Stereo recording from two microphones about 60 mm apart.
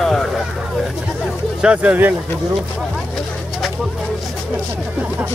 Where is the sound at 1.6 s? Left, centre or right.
Centre.